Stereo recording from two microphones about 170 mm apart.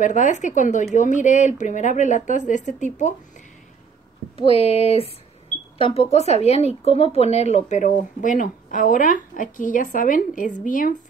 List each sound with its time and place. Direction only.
0.0 s speech: 45° left (ahead or behind)
4.4 s speech: 35° left (ahead or behind); by 11.0 s 50° left (ahead or behind)